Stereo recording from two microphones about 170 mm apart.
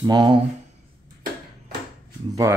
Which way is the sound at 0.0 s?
25° right (ahead or behind).